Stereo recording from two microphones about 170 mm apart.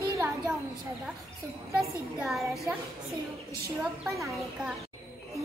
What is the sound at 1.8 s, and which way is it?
Speech, centre (ahead or behind).